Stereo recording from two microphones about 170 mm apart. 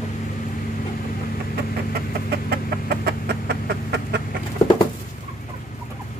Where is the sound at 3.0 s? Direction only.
75° right (ahead or behind).